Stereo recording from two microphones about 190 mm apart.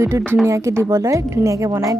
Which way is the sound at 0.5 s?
15° right (ahead or behind).